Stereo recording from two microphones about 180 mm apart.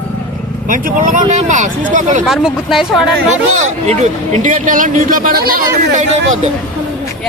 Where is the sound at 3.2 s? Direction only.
40° right (ahead or behind).